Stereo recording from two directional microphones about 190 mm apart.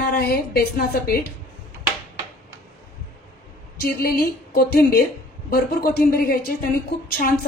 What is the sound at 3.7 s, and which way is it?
A woman's voice, 55° left (ahead or behind).